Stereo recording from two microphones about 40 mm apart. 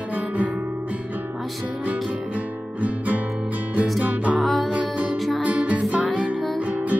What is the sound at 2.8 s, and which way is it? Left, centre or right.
Guitar, right.